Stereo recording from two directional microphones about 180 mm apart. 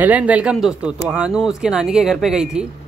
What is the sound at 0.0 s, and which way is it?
Speech, 10° right (ahead or behind).